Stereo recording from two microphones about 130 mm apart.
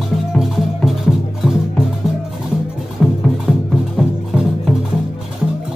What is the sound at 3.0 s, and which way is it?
Music, 10° left (ahead or behind).